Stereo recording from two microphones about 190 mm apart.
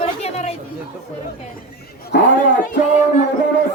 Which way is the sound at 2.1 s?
65° left (ahead or behind).